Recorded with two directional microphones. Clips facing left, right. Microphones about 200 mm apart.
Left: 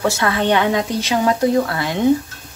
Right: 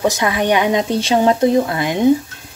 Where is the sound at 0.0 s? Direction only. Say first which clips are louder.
Right 1 dB; 15° right (ahead or behind).